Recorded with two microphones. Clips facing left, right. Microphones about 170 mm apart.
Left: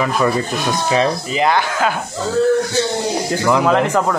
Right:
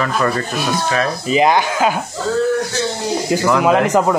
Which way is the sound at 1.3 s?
15° right (ahead or behind).